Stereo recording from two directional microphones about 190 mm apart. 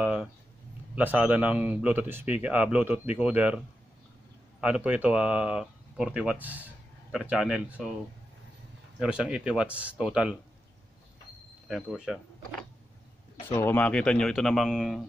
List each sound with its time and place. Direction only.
0.0 s a sound: 5° right (ahead or behind)
0.9 s speech: 10° right (ahead or behind)
9.0 s speech: 5° right (ahead or behind)
11.6 s speech: centre (ahead or behind)
13.6 s speech: 10° left (ahead or behind)